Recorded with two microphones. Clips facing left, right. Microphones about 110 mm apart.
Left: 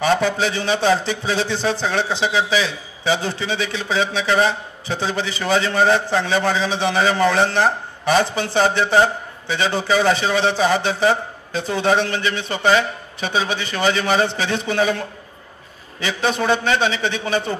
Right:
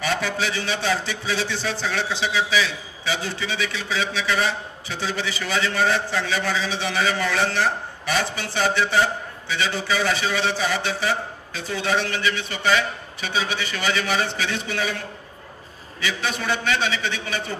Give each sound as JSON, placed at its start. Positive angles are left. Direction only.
{"t": 0.0, "sound": "a man's voice", "side_deg": 25}
{"t": 9.8, "sound": "a man's voice", "side_deg": 45}
{"t": 10.1, "sound": "a man's voice", "side_deg": 30}